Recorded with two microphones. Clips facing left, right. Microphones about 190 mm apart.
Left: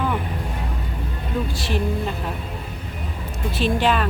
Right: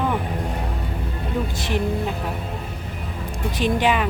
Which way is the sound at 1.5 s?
15° right (ahead or behind).